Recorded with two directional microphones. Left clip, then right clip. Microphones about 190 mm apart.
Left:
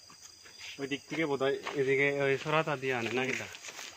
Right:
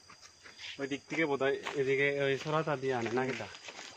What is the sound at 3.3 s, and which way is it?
Speech, 40° right (ahead or behind).